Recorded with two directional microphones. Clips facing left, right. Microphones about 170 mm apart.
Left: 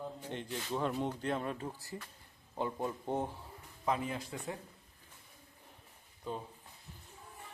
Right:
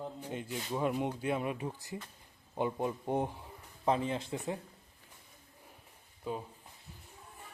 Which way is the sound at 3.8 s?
30° right (ahead or behind).